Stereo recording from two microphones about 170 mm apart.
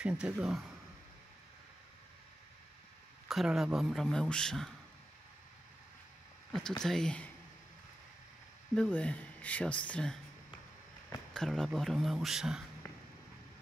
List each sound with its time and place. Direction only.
0.0 s a man's voice: 5° right (ahead or behind)
3.3 s a man's voice: centre (ahead or behind)
6.8 s a man's voice: 5° left (ahead or behind)
8.7 s speech: 5° left (ahead or behind)
11.3 s a man's voice: 5° left (ahead or behind)